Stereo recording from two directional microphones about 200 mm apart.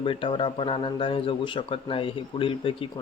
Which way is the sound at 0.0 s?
25° left (ahead or behind).